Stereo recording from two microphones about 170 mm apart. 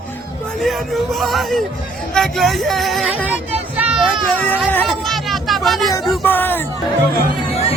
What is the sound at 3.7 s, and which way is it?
Children playing, 5° right (ahead or behind).